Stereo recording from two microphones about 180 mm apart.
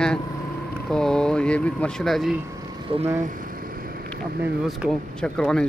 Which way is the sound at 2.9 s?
30° right (ahead or behind).